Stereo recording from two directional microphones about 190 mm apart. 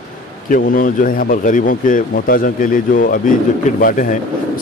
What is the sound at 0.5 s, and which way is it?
Speech, 45° left (ahead or behind).